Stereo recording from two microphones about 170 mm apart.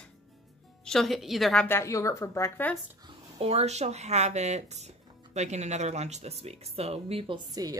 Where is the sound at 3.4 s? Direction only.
40° right (ahead or behind).